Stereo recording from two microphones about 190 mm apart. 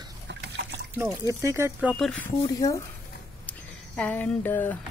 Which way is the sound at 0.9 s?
15° right (ahead or behind).